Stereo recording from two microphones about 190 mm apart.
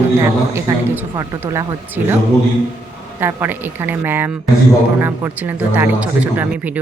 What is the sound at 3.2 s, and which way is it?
Speech, 10° right (ahead or behind).